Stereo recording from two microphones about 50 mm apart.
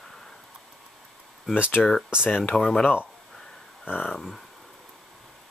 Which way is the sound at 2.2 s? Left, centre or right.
Left.